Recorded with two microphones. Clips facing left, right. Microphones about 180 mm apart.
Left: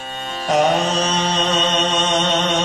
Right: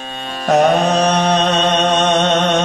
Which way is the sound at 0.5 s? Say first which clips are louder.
Right 4 dB; 60° right (ahead or behind).